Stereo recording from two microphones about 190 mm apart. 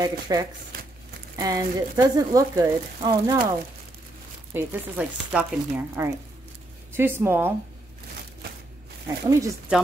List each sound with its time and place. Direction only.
0.0 s speech: 20° right (ahead or behind)
4.6 s speech: 5° right (ahead or behind)
9.0 s speech: 15° right (ahead or behind)